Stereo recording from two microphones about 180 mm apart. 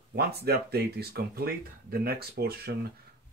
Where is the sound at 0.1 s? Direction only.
60° right (ahead or behind).